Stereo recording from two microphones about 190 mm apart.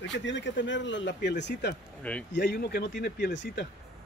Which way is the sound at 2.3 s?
55° left (ahead or behind).